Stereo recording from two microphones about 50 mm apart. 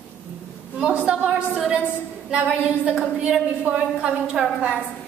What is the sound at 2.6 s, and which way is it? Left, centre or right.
Speech, centre.